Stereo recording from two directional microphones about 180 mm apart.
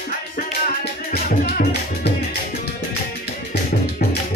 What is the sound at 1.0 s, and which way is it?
Music, 55° left (ahead or behind).